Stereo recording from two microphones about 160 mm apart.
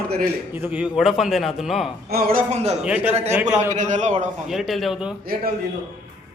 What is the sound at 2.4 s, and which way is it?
Speech, 45° right (ahead or behind).